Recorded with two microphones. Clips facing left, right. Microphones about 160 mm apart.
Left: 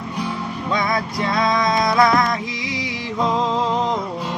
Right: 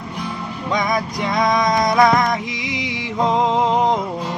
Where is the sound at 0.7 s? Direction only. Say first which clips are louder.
Right 2 dB; 15° right (ahead or behind).